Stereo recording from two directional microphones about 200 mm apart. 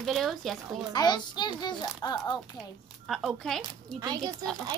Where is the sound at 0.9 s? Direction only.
20° left (ahead or behind).